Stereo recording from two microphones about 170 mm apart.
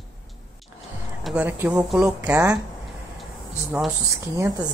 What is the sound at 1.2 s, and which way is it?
Speech, 10° right (ahead or behind).